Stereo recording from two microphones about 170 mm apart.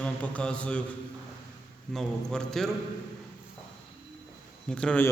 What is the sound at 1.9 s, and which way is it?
Speech, 5° left (ahead or behind).